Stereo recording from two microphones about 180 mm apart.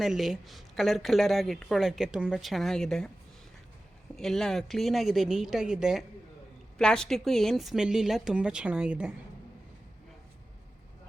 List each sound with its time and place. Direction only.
0.0 s a woman's voice: centre (ahead or behind)
4.2 s a woman's voice: 5° left (ahead or behind)